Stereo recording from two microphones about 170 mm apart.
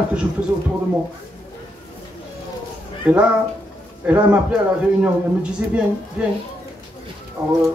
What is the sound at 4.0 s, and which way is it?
Speech, 10° right (ahead or behind).